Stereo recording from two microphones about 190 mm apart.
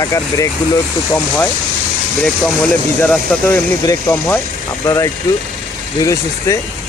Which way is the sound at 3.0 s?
10° left (ahead or behind).